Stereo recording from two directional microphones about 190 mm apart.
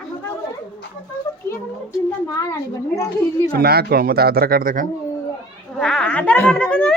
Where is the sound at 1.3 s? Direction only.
15° left (ahead or behind).